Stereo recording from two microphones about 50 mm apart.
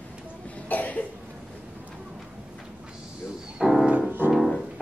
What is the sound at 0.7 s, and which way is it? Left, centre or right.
Cough, left.